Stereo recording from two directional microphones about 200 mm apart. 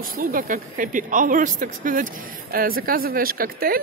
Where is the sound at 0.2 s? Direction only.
45° right (ahead or behind).